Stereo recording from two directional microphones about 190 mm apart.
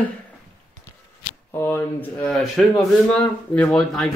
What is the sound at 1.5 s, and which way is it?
Speech, 10° left (ahead or behind).